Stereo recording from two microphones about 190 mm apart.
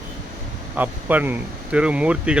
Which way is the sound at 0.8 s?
10° right (ahead or behind).